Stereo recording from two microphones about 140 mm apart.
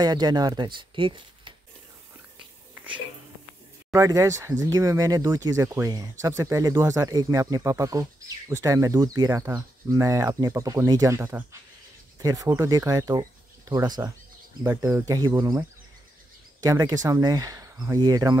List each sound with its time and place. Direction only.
0.0 s speech: 30° right (ahead or behind)
2.7 s a sound: 10° right (ahead or behind)
3.9 s speech: 20° right (ahead or behind)
16.6 s speech: 25° right (ahead or behind)